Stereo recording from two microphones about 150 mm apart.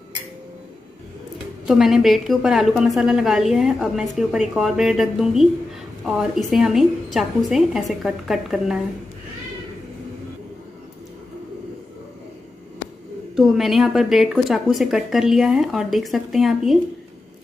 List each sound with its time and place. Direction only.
1.7 s a woman's voice: centre (ahead or behind)
13.4 s a woman's voice: centre (ahead or behind)